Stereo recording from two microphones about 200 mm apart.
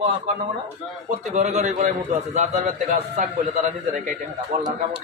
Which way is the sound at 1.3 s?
35° right (ahead or behind).